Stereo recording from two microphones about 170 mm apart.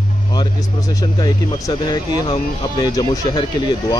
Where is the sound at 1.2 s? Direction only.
25° left (ahead or behind).